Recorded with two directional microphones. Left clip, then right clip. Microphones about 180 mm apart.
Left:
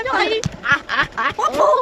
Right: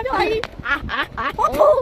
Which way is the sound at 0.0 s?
40° right (ahead or behind).